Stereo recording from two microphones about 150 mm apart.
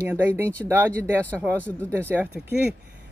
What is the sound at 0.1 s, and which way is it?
Speech, 15° right (ahead or behind).